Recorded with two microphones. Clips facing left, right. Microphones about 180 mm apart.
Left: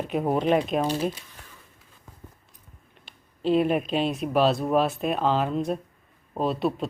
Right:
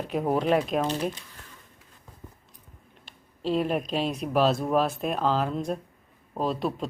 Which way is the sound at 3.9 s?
Centre (ahead or behind).